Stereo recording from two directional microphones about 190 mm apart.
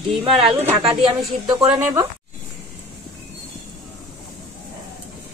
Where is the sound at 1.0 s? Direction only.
25° right (ahead or behind).